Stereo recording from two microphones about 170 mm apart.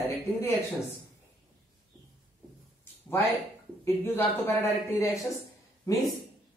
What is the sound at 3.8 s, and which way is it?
A man's voice, 15° left (ahead or behind).